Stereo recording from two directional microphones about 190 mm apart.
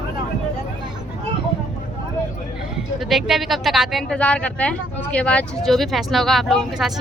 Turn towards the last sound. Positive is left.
turn(degrees=0)  # may be behind; listen again after turning